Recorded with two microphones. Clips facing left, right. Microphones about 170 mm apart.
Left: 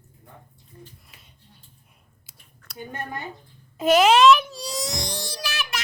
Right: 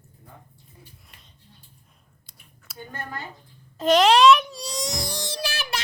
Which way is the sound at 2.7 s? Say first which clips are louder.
Left 2 dB; 20° left (ahead or behind).